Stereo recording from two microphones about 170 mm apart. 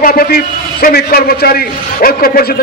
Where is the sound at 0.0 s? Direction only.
60° left (ahead or behind).